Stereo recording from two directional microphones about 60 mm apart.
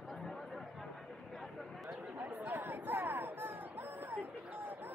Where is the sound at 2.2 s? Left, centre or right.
Right.